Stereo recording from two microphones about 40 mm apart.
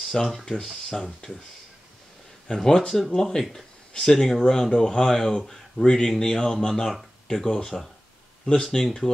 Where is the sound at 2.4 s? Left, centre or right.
Centre.